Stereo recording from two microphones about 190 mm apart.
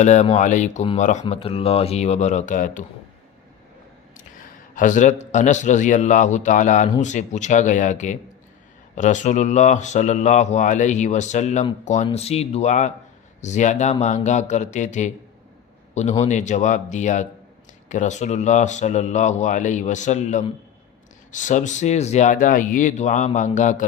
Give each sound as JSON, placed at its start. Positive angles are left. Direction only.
{"t": 0.0, "sound": "speech", "side_deg": 40}
{"t": 4.7, "sound": "speech", "side_deg": 45}